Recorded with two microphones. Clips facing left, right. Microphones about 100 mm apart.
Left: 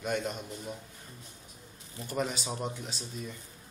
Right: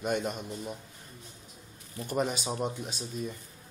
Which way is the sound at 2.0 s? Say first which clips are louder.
Right 3 dB; 20° right (ahead or behind).